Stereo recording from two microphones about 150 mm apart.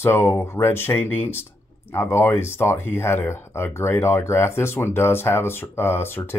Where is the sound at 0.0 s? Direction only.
15° left (ahead or behind).